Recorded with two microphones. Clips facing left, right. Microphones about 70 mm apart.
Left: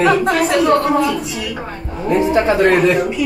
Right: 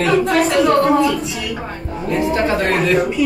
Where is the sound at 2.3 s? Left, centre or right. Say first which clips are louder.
Left 5 dB; left.